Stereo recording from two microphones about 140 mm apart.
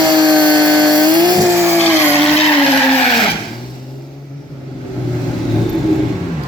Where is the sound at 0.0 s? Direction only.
30° right (ahead or behind).